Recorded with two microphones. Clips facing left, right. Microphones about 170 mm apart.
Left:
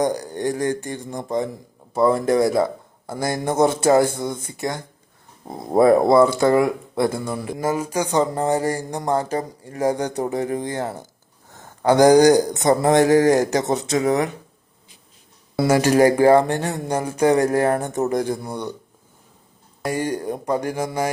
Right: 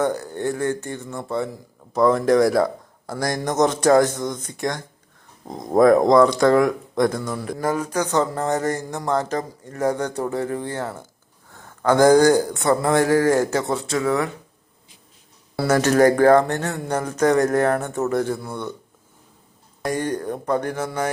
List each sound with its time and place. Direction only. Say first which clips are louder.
0.3 s speech: left 1 dB; 15° left (ahead or behind)
15.5 s speech: left 1 dB; 10° left (ahead or behind)
19.8 s speech: even; 10° left (ahead or behind)